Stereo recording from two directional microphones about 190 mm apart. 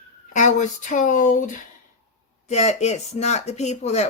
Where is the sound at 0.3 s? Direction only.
40° left (ahead or behind).